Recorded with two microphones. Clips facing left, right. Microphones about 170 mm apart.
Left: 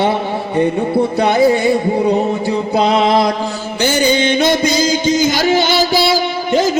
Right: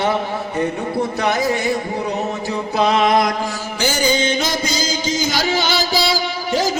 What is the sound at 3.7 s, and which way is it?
Music, 60° left (ahead or behind).